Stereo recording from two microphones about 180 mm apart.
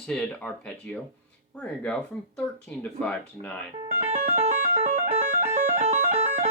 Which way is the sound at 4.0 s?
35° right (ahead or behind).